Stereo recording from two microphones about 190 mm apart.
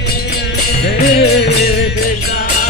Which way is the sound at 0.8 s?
55° left (ahead or behind).